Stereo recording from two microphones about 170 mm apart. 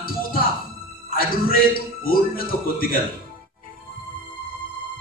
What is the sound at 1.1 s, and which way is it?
A man's voice, 60° left (ahead or behind).